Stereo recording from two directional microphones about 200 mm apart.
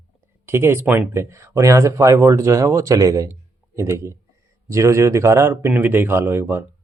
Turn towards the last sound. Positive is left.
turn(degrees=-15)  # may be behind; listen again after turning